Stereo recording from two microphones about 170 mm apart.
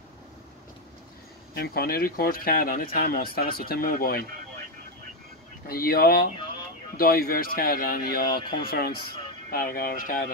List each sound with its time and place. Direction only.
1.5 s a man's voice: 65° left (ahead or behind)
5.7 s a man's voice: 60° left (ahead or behind)